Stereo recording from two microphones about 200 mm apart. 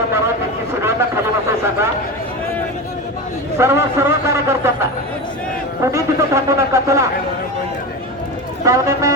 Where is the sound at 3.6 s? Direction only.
15° right (ahead or behind).